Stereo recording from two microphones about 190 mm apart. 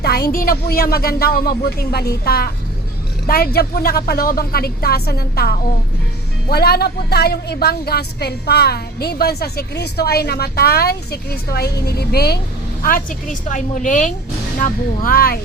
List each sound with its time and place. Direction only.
0.0 s a woman's voice: 55° left (ahead or behind)
12.8 s speech: 45° left (ahead or behind)